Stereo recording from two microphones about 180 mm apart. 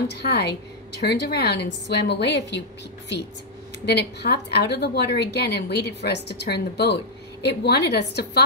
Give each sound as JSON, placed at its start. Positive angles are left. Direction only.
{"t": 0.1, "sound": "a woman's voice", "side_deg": 65}
{"t": 3.8, "sound": "a woman's voice", "side_deg": 65}